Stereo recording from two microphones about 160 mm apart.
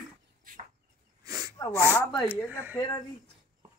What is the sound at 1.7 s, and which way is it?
Speech, 15° right (ahead or behind).